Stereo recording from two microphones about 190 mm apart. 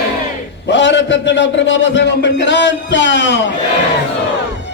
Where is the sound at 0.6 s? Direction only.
70° left (ahead or behind).